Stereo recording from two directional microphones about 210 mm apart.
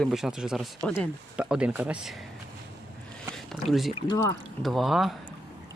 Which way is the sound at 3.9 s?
20° left (ahead or behind).